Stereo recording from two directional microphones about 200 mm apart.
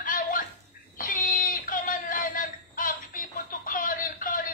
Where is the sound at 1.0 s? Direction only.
45° left (ahead or behind).